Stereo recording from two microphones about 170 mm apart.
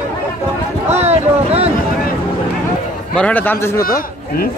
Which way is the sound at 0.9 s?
40° right (ahead or behind).